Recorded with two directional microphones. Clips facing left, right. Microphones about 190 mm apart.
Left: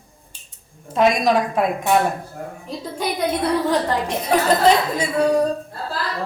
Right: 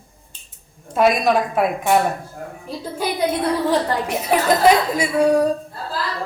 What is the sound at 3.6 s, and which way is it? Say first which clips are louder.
A woman's voice: right 1 dB; 10° right (ahead or behind).